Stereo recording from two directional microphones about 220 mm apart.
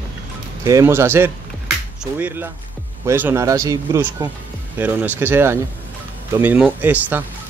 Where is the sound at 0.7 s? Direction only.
15° right (ahead or behind).